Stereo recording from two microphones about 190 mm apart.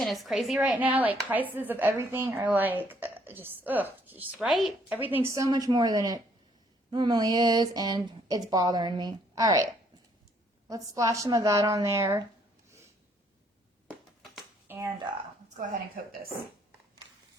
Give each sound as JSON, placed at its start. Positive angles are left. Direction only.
{"t": 0.0, "sound": "speech", "side_deg": 0}
{"t": 10.7, "sound": "speech", "side_deg": -15}
{"t": 14.7, "sound": "a sound", "side_deg": -10}